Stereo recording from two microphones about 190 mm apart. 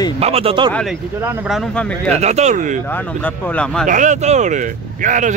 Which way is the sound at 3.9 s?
40° right (ahead or behind).